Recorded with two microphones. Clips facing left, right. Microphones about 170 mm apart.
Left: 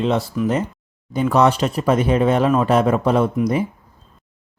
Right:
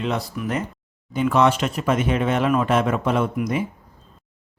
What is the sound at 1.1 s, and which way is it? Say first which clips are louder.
Speech: left 2 dB; 40° left (ahead or behind).